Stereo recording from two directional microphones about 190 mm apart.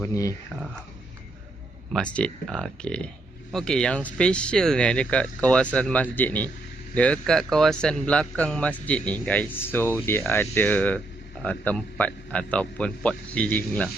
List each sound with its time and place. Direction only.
0.0 s a man's voice: 15° left (ahead or behind)
1.9 s a man's voice: 5° left (ahead or behind)